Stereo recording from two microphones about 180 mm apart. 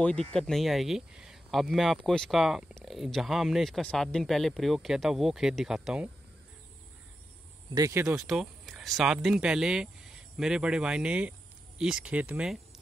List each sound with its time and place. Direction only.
0.0 s speech: 5° left (ahead or behind)
7.7 s speech: 20° right (ahead or behind)
8.2 s speech: centre (ahead or behind)